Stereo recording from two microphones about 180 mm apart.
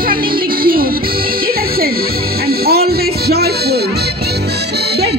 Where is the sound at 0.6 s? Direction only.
55° right (ahead or behind).